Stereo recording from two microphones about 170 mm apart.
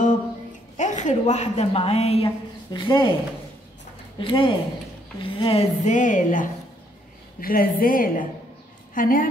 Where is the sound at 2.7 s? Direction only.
25° left (ahead or behind).